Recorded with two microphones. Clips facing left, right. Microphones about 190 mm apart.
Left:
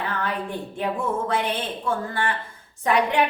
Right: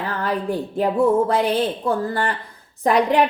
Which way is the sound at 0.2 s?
35° right (ahead or behind).